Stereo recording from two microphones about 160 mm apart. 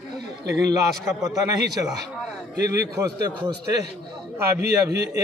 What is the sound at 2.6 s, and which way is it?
A man's voice, 20° right (ahead or behind).